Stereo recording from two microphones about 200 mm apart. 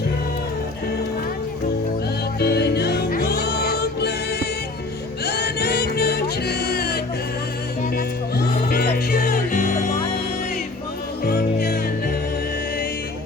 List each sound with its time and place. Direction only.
2.4 s music: 55° left (ahead or behind)
8.7 s music: 50° left (ahead or behind)
11.2 s music: 50° left (ahead or behind)